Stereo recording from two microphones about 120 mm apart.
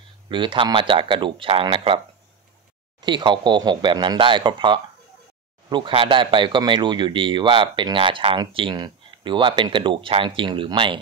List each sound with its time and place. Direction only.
0.3 s speech: 40° right (ahead or behind)
3.0 s speech: 40° right (ahead or behind)